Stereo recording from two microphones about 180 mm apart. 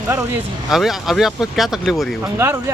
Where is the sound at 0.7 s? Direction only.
Centre (ahead or behind).